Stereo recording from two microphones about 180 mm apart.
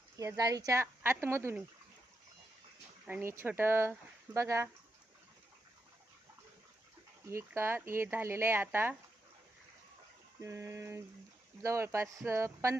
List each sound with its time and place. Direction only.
0.2 s speech: 20° right (ahead or behind)
3.1 s speech: 10° right (ahead or behind)
7.3 s speech: 15° right (ahead or behind)
10.4 s speech: 15° right (ahead or behind)